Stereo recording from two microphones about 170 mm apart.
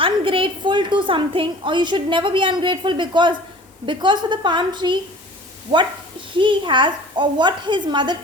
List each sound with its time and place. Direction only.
0.0 s a woman's voice: 30° right (ahead or behind)
6.3 s a woman's voice: 30° right (ahead or behind)